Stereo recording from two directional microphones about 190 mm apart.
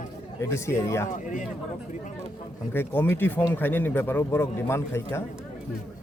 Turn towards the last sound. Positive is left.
turn(degrees=15)  # may be behind; listen again after turning